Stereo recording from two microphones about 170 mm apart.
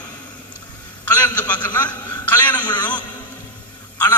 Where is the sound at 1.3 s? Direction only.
10° left (ahead or behind).